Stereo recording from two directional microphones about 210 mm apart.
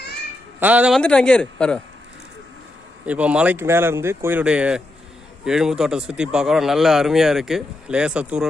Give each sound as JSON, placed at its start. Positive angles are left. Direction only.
{"t": 0.6, "sound": "a man's voice", "side_deg": -5}
{"t": 3.1, "sound": "a man's voice", "side_deg": -5}